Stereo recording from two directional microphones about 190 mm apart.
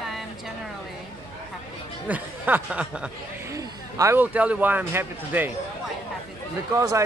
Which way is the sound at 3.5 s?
15° right (ahead or behind).